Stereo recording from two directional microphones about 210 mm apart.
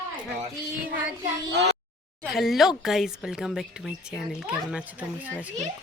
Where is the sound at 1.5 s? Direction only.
55° right (ahead or behind).